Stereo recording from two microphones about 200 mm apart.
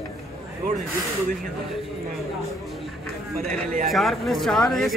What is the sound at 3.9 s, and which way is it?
Speech, centre (ahead or behind).